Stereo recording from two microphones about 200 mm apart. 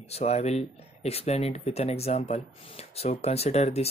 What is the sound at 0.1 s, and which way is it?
Speech, 30° left (ahead or behind).